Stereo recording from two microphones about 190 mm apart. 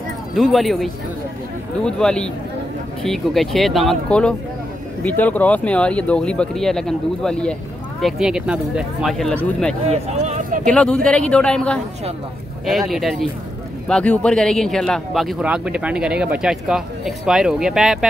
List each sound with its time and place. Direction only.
0.3 s speech: centre (ahead or behind)
1.9 s speech: 5° left (ahead or behind)
9.8 s speech: 35° right (ahead or behind)
10.6 s speech: 5° left (ahead or behind)